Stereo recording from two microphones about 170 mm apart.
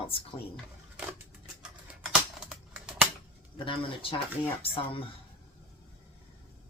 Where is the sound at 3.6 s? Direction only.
30° left (ahead or behind).